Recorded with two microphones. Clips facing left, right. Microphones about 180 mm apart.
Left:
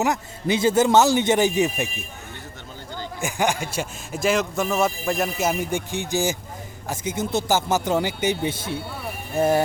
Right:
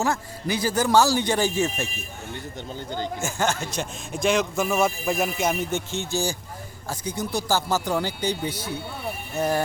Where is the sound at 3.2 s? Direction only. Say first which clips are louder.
Left 5 dB; 15° left (ahead or behind).